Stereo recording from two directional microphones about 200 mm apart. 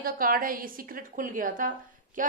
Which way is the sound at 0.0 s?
45° right (ahead or behind).